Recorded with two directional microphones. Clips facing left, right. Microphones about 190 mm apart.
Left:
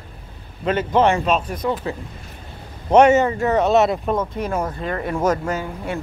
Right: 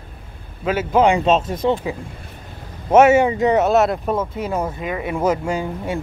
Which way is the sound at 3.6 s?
Centre (ahead or behind).